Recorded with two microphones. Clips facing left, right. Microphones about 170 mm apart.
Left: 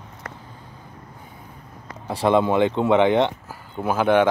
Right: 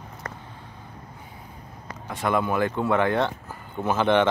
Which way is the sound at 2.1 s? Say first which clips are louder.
Left 6 dB; 30° left (ahead or behind).